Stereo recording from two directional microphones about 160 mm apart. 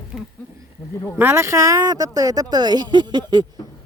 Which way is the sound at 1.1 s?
15° right (ahead or behind).